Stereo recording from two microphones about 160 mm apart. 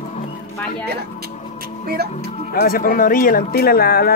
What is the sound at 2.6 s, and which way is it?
Speech, 60° left (ahead or behind).